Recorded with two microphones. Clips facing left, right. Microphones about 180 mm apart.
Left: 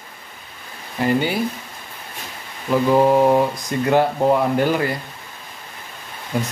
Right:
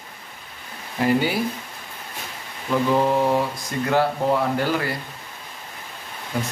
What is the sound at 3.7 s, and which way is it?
Speech, 20° left (ahead or behind).